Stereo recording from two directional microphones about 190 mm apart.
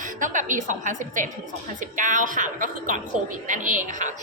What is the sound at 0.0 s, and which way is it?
A woman's voice, 40° right (ahead or behind).